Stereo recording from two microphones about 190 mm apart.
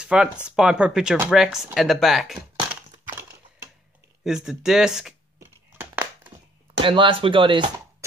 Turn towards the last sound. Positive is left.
turn(degrees=-25)  # may be behind; listen again after turning